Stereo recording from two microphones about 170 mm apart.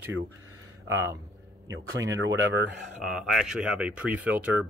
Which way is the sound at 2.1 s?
90° right.